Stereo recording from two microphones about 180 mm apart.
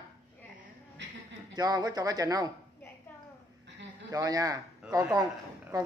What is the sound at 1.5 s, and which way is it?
Speech, 20° right (ahead or behind).